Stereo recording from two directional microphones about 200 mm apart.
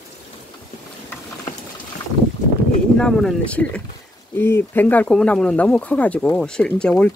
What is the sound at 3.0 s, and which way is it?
Speech, 5° left (ahead or behind).